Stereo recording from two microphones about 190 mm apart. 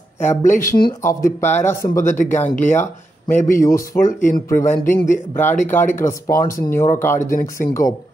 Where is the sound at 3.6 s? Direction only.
15° left (ahead or behind).